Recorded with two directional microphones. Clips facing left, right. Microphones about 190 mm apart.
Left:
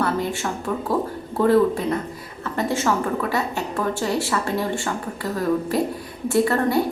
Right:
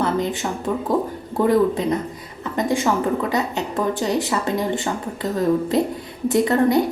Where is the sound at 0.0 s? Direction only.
20° right (ahead or behind).